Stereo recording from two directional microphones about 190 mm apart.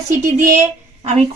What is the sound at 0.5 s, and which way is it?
Speech, 35° right (ahead or behind).